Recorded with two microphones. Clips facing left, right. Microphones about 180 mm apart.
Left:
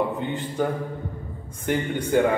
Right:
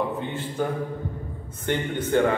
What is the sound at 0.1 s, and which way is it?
Speech, 15° left (ahead or behind).